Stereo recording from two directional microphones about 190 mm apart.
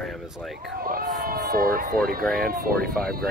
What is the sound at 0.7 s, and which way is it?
Speech, 50° right (ahead or behind).